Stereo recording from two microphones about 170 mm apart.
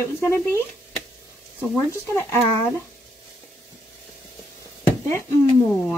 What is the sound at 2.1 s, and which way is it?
Speech, 15° left (ahead or behind).